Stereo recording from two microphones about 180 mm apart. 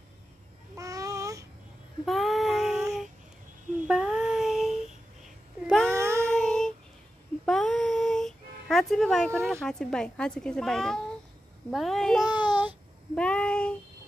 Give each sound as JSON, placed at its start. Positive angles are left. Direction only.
{"t": 0.7, "sound": "child singing", "side_deg": -20}
{"t": 2.0, "sound": "child singing", "side_deg": 0}
{"t": 3.8, "sound": "a sound", "side_deg": -5}
{"t": 5.7, "sound": "child singing", "side_deg": 5}
{"t": 5.9, "sound": "child singing", "side_deg": -15}
{"t": 6.2, "sound": "child singing", "side_deg": 5}
{"t": 7.4, "sound": "music", "side_deg": 5}
{"t": 9.5, "sound": "a child's voice", "side_deg": 5}
{"t": 12.3, "sound": "a sound", "side_deg": 25}
{"t": 13.1, "sound": "child singing", "side_deg": 5}